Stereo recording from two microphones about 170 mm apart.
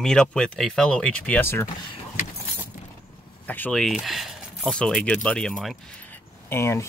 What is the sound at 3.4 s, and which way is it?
Speech, 10° left (ahead or behind).